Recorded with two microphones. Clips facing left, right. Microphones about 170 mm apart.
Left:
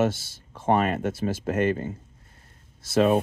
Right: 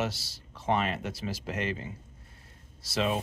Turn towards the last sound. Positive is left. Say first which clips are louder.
# left 9 dB
turn(degrees=50)  # may be behind; listen again after turning